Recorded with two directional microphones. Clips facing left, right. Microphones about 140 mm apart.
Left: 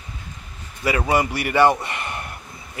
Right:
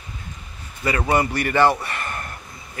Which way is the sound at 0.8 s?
10° left (ahead or behind).